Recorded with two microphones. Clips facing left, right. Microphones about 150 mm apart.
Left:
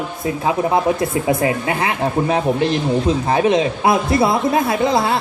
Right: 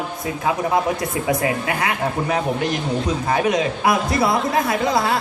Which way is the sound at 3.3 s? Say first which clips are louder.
Left 3 dB; 25° left (ahead or behind).